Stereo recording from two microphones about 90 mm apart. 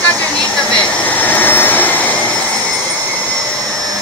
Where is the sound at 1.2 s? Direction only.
20° left (ahead or behind).